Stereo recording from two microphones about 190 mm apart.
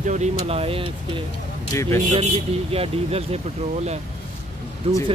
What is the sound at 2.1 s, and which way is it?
Speech, 30° right (ahead or behind).